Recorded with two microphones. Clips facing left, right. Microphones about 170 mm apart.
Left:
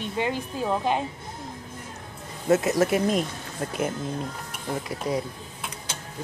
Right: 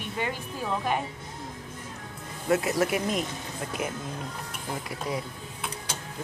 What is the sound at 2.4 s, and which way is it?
Speech, 25° left (ahead or behind).